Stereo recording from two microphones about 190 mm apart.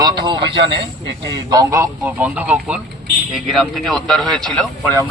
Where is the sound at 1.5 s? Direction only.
20° right (ahead or behind).